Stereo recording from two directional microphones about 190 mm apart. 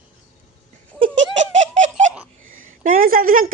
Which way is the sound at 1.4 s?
40° right (ahead or behind).